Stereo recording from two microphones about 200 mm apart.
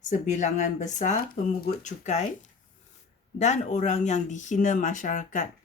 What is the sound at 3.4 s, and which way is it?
Speech, 35° left (ahead or behind).